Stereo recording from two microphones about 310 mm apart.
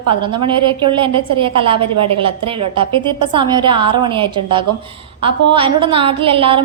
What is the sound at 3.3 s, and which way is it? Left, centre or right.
A woman's voice, centre.